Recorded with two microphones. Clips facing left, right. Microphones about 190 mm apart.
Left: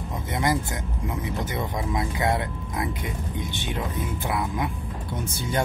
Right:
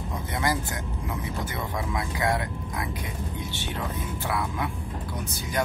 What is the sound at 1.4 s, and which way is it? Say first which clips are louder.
Speech: left 3 dB; 20° left (ahead or behind).